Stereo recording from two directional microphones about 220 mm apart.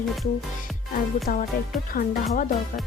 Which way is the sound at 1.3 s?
40° left (ahead or behind).